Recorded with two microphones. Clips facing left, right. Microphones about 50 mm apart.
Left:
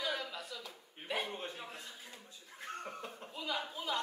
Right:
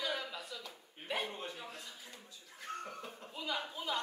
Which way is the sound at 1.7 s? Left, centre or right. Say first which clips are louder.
Left 1 dB; left.